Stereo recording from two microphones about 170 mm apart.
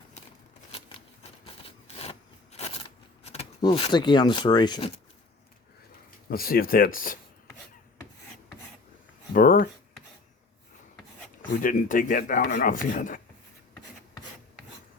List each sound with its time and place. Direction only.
1.2 s a sound: 35° left (ahead or behind)
3.6 s speech: 30° left (ahead or behind)
6.2 s speech: 60° left (ahead or behind)
9.3 s a sound: 55° left (ahead or behind)
11.6 s speech: 50° left (ahead or behind)
12.4 s speech: 70° left (ahead or behind)